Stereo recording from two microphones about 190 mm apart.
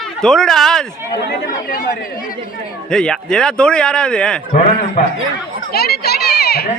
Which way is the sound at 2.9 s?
5° left (ahead or behind).